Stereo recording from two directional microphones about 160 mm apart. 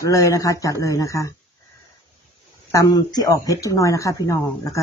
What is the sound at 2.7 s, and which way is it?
Speech, 25° left (ahead or behind).